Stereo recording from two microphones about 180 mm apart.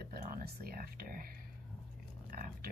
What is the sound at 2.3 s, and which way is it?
Speech, 50° right (ahead or behind).